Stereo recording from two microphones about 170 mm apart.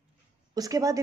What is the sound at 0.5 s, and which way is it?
Speech, 20° right (ahead or behind).